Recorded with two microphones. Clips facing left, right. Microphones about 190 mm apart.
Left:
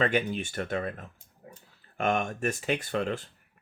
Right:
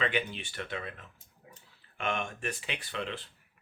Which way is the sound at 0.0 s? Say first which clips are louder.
Left 6 dB; 45° left (ahead or behind).